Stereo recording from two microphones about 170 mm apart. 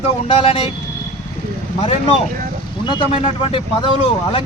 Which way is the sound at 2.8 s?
30° left (ahead or behind).